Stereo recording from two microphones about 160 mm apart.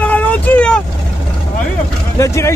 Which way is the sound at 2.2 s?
20° left (ahead or behind).